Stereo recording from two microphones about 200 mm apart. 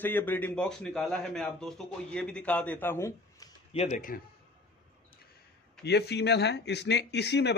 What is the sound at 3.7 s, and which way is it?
Speech, 35° left (ahead or behind).